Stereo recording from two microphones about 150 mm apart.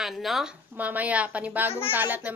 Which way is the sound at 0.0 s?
Centre (ahead or behind).